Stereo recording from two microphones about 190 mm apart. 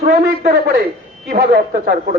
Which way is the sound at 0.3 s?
55° right (ahead or behind).